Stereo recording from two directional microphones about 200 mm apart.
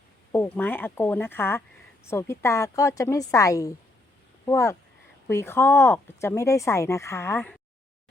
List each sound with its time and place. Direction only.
0.3 s speech: 10° left (ahead or behind)